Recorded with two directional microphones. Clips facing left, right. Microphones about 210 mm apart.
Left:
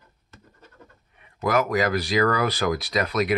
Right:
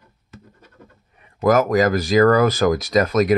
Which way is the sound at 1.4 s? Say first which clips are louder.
Right 6 dB; 45° right (ahead or behind).